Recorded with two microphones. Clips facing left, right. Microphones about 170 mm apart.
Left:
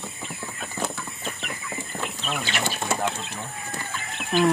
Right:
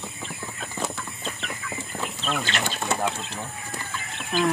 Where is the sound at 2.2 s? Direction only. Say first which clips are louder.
Right 1 dB; 10° left (ahead or behind).